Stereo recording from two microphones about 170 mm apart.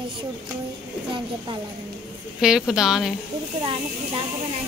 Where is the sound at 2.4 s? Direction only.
5° right (ahead or behind).